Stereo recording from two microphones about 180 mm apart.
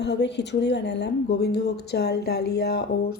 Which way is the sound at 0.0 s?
75° left (ahead or behind).